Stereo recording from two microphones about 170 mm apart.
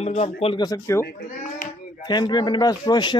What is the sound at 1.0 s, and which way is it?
Speech, 55° left (ahead or behind).